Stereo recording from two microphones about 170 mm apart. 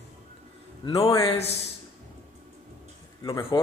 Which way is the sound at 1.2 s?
35° left (ahead or behind).